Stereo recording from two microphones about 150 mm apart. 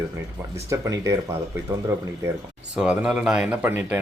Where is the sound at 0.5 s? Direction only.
20° right (ahead or behind).